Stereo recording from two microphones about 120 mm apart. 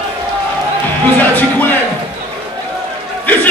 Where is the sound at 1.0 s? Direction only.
15° left (ahead or behind).